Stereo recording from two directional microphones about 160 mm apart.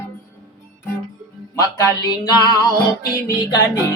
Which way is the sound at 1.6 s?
25° left (ahead or behind).